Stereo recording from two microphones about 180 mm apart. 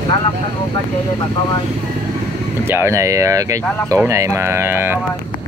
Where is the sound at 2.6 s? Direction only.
15° right (ahead or behind).